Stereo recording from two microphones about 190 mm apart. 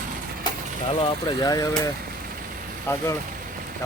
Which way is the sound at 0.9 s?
25° left (ahead or behind).